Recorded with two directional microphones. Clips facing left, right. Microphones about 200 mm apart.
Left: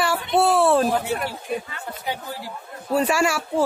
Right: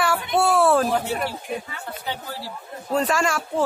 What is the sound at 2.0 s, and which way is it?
Speech, 10° left (ahead or behind).